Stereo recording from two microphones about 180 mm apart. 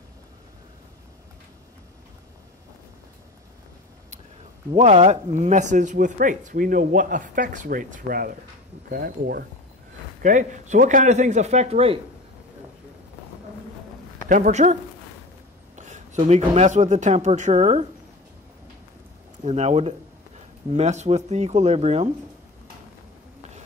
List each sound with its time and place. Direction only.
4.7 s speech: 40° right (ahead or behind); by 9.4 s 60° right (ahead or behind)
10.2 s speech: 45° right (ahead or behind)
14.3 s speech: 45° right (ahead or behind)
19.4 s speech: 40° right (ahead or behind)